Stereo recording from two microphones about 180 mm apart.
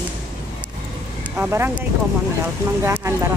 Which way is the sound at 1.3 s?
10° right (ahead or behind).